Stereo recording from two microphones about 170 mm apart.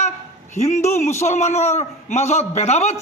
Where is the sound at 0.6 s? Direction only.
40° left (ahead or behind).